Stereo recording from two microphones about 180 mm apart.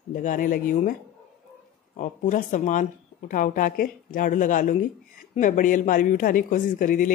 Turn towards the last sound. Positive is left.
turn(degrees=50)  # may be behind; listen again after turning